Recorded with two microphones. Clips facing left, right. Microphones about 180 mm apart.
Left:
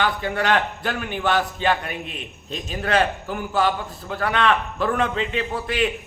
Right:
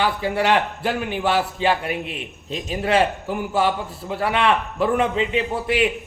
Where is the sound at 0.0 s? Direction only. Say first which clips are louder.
Right 2 dB; 30° right (ahead or behind).